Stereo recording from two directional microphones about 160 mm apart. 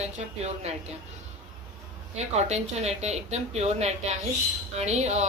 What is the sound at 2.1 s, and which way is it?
A woman's voice, 40° right (ahead or behind).